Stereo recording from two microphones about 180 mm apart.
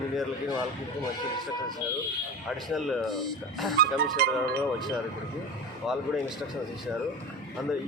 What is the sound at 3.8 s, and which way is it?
Speech, 55° right (ahead or behind).